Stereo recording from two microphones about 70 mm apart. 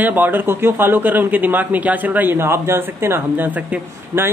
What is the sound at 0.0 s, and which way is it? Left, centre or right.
Speech, right.